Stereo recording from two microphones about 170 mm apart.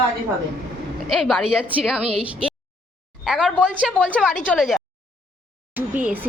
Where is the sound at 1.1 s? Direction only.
Centre (ahead or behind).